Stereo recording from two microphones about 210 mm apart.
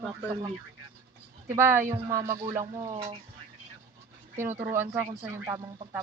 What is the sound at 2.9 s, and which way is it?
Speech, 25° right (ahead or behind).